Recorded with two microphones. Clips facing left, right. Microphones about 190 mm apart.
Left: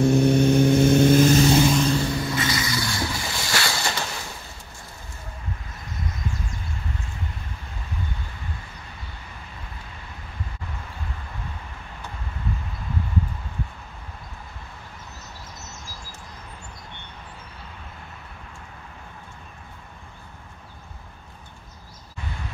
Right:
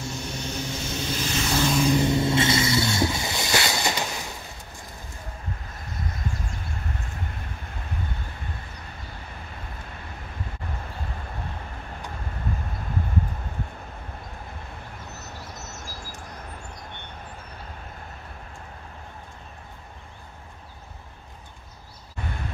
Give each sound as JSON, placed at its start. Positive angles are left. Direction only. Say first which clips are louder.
{"t": 0.0, "sound": "vehicle", "louder": "left 16 dB", "side_deg": 60}
{"t": 1.7, "sound": "vehicle", "louder": "left 1 dB", "side_deg": -5}
{"t": 2.0, "sound": "vehicle", "louder": "right 4 dB", "side_deg": -25}